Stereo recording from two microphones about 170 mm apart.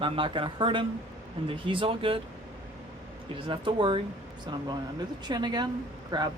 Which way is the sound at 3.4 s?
30° right (ahead or behind).